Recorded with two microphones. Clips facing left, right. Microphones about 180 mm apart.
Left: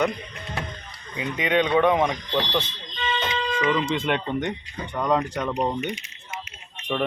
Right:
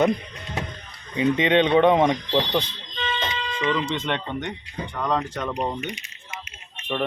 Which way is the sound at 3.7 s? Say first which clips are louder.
Even; 10° left (ahead or behind).